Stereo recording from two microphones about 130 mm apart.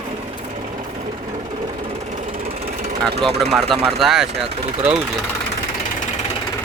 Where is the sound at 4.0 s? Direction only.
5° right (ahead or behind).